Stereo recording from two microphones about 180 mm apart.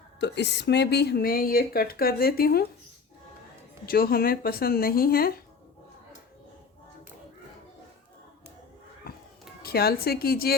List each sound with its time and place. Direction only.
0.2 s speech: 70° left (ahead or behind)
3.8 s speech: 55° left (ahead or behind)
9.6 s speech: 60° left (ahead or behind)